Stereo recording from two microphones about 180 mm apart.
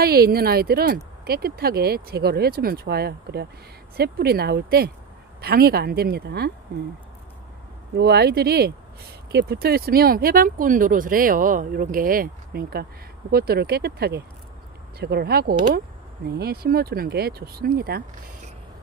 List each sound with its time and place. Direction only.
0.0 s speech: 60° right (ahead or behind)
7.9 s speech: 65° right (ahead or behind)